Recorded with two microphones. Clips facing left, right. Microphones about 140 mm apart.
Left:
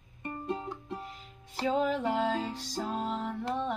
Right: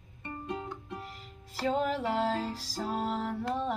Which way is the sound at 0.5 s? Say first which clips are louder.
Left 1 dB; 5° left (ahead or behind).